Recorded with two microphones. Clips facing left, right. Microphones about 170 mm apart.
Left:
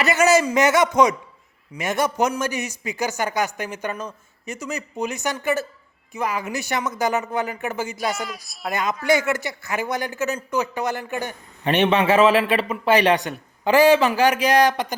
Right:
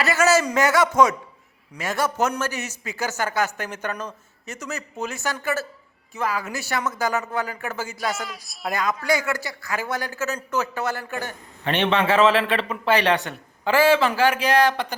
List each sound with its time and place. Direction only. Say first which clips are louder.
0.0 s a man's voice: left 2 dB; 20° left (ahead or behind)